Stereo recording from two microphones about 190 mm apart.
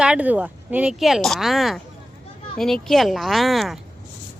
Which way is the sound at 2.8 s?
Centre (ahead or behind).